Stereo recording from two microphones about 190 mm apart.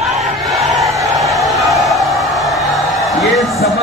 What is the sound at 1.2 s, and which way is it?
Music, centre (ahead or behind).